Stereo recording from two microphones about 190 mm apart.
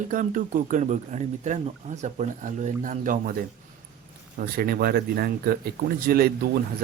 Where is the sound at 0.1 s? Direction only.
45° right (ahead or behind).